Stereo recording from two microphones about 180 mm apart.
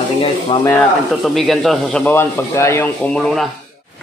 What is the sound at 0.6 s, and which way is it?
Speech, 10° left (ahead or behind).